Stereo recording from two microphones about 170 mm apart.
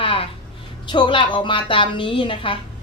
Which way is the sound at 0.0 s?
30° left (ahead or behind).